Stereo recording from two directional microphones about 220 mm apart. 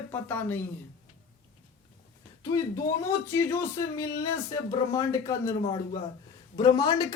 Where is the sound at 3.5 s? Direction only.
10° left (ahead or behind).